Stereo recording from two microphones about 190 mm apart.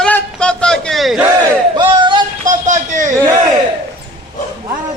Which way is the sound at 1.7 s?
25° right (ahead or behind).